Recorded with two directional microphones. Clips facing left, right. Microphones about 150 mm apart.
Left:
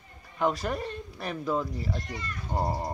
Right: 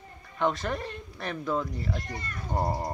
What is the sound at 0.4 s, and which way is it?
Speech, 10° left (ahead or behind).